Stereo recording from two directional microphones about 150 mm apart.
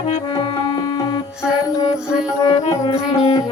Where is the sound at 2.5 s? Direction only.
30° left (ahead or behind).